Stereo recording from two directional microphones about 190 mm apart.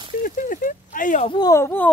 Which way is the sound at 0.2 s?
45° left (ahead or behind).